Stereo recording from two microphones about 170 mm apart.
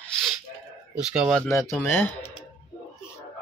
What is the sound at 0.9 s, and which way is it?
Speech, 5° right (ahead or behind).